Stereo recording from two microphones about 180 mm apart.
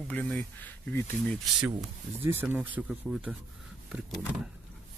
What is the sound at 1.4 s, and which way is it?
Speech, centre (ahead or behind).